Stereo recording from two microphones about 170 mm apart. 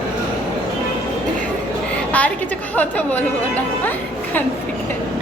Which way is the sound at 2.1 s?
10° left (ahead or behind).